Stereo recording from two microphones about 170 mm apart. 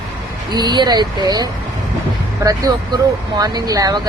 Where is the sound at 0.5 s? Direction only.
25° right (ahead or behind).